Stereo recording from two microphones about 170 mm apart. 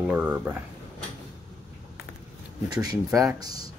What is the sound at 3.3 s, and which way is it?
Speech, 20° right (ahead or behind).